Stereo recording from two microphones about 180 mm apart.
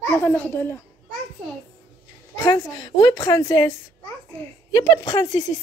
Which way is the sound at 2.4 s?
20° left (ahead or behind).